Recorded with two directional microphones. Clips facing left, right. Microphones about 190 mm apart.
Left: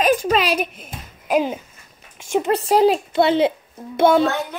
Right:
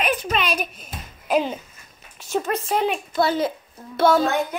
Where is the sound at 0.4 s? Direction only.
75° left (ahead or behind).